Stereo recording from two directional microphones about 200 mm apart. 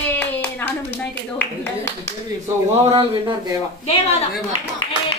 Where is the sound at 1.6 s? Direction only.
10° left (ahead or behind).